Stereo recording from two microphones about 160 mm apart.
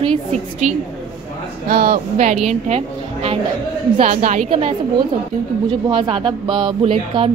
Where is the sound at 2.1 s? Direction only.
45° right (ahead or behind).